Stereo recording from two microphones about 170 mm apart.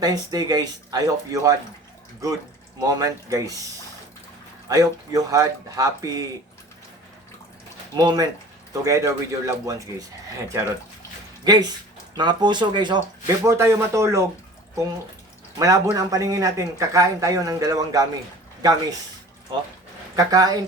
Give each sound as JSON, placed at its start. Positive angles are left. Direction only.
{"t": 0.0, "sound": "a man's voice", "side_deg": -20}
{"t": 2.8, "sound": "a man's voice", "side_deg": -20}
{"t": 4.7, "sound": "a man's voice", "side_deg": -20}
{"t": 7.9, "sound": "a man's voice", "side_deg": -25}
{"t": 11.4, "sound": "a man's voice", "side_deg": -25}
{"t": 13.4, "sound": "speech", "side_deg": -15}
{"t": 15.5, "sound": "a man's voice", "side_deg": -20}
{"t": 20.1, "sound": "a man's voice", "side_deg": -20}